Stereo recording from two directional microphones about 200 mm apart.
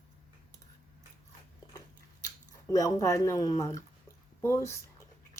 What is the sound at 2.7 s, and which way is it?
A woman's voice, 15° left (ahead or behind).